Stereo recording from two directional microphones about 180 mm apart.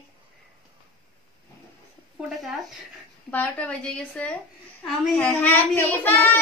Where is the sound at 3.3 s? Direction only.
10° left (ahead or behind).